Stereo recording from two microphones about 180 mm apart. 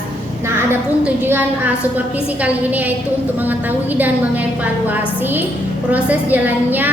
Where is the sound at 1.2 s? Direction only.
10° right (ahead or behind).